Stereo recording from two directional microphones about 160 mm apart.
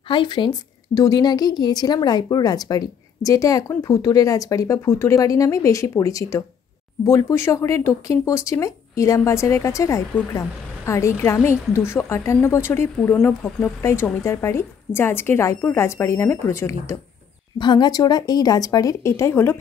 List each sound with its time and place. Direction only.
0.1 s a woman's voice: 30° left (ahead or behind)
17.6 s a woman's voice: 25° left (ahead or behind)